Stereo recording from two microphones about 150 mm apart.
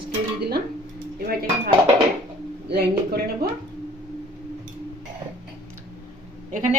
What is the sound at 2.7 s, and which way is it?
Speech, 90° right.